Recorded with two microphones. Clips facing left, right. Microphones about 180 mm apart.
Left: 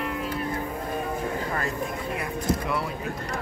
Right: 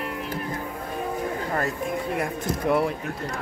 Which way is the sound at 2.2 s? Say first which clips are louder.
Right 1 dB; 55° right (ahead or behind).